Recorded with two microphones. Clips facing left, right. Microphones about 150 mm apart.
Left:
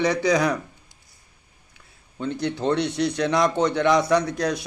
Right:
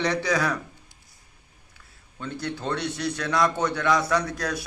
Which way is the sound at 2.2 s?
20° left (ahead or behind).